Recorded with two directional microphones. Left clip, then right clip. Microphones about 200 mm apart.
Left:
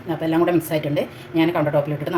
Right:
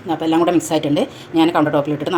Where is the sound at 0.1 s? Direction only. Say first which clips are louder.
Right 3 dB; 35° right (ahead or behind).